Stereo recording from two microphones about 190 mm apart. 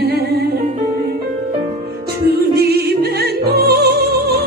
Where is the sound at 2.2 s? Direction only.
55° right (ahead or behind).